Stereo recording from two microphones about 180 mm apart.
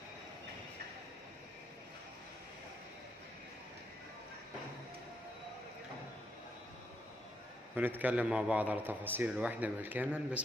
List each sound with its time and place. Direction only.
7.7 s a man's voice: 10° right (ahead or behind)